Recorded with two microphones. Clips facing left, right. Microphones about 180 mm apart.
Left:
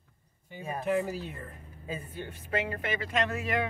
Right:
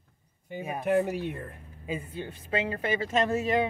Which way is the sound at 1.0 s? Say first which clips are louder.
Right 5 dB; 60° right (ahead or behind).